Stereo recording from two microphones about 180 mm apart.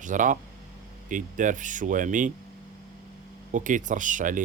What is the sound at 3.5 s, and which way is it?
Speech, 45° right (ahead or behind).